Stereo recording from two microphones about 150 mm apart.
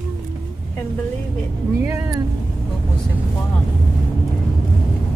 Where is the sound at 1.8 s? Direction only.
20° right (ahead or behind).